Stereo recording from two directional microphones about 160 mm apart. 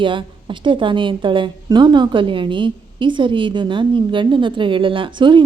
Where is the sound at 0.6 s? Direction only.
30° right (ahead or behind).